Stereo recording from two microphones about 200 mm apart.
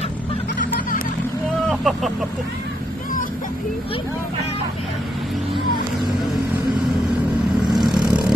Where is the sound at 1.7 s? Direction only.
Centre (ahead or behind).